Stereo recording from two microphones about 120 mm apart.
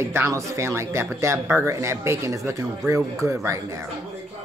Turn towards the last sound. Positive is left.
turn(degrees=-25)  # may be behind; listen again after turning